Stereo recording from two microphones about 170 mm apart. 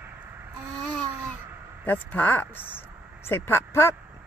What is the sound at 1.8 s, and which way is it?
Speech, 10° left (ahead or behind).